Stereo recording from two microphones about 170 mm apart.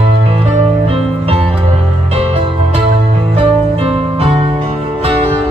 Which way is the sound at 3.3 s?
35° right (ahead or behind).